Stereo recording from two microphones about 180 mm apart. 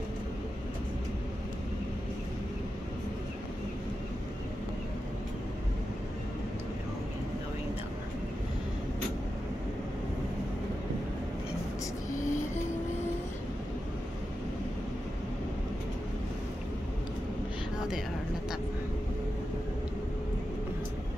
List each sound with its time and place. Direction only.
12.1 s music: 45° left (ahead or behind)